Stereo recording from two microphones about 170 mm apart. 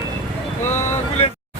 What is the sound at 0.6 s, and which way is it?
Vehicle, 15° left (ahead or behind).